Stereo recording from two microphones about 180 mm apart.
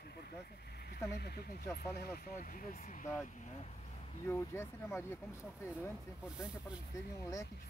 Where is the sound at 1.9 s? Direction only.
55° left (ahead or behind).